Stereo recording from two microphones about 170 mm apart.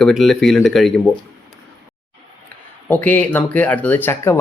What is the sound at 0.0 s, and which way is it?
Speech, centre (ahead or behind).